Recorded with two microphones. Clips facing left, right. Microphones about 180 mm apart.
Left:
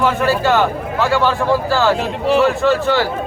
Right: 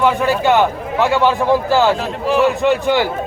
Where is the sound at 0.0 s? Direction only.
15° right (ahead or behind).